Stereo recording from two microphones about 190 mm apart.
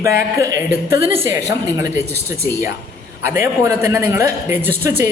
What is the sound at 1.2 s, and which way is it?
A man's voice, 20° right (ahead or behind).